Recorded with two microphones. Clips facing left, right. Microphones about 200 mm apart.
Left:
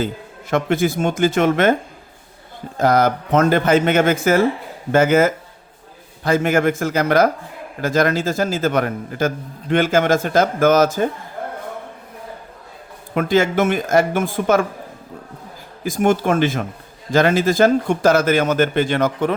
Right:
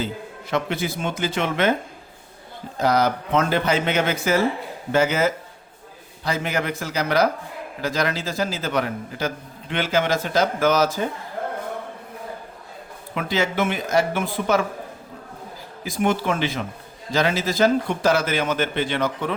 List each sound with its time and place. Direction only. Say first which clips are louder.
0.5 s a man's voice: left 7 dB; 50° left (ahead or behind)
2.7 s a man's voice: left 4 dB; 50° left (ahead or behind)
13.1 s a man's voice: left 6 dB; 50° left (ahead or behind)
15.8 s a man's voice: left 5 dB; 45° left (ahead or behind)